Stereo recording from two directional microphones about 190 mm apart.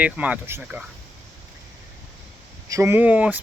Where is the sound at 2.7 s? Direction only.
15° right (ahead or behind).